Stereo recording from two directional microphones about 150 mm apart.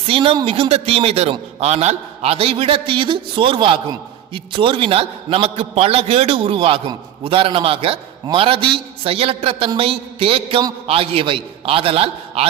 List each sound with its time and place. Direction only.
0.1 s a man's voice: 35° right (ahead or behind)